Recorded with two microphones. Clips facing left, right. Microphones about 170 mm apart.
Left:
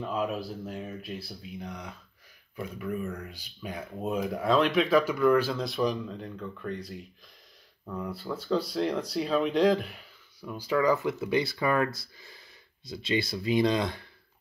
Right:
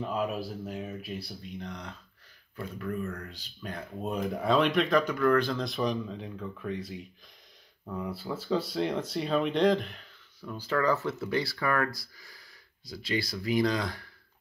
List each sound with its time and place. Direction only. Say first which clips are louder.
0.0 s speech: even; centre (ahead or behind); by 14.0 s 25° left (ahead or behind)